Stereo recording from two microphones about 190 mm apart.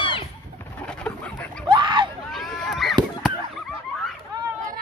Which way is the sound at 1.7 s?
25° right (ahead or behind).